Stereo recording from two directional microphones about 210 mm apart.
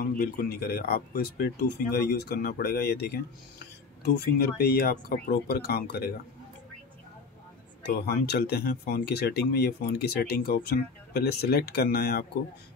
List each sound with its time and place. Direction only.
0.0 s speech: 45° left (ahead or behind)
8.0 s speech: 50° left (ahead or behind)